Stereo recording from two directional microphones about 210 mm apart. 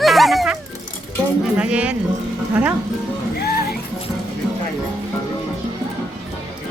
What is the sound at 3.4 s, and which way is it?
Music, 45° left (ahead or behind).